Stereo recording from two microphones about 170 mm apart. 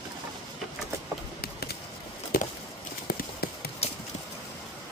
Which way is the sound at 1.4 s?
65° left (ahead or behind).